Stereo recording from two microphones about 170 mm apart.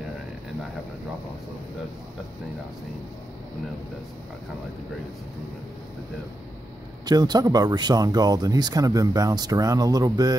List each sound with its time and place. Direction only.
7.1 s speech: 25° right (ahead or behind)